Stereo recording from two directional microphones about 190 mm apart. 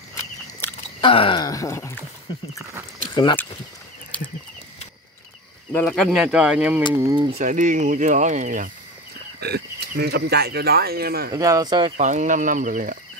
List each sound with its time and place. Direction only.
1.0 s speech: 25° left (ahead or behind)
3.1 s a sound: 25° left (ahead or behind)
5.7 s speech: 10° left (ahead or behind)
7.1 s speech: 25° right (ahead or behind)
7.3 s speech: 40° right (ahead or behind)
9.4 s speech: 60° right (ahead or behind)
11.3 s speech: 15° right (ahead or behind)
12.0 s speech: 40° right (ahead or behind)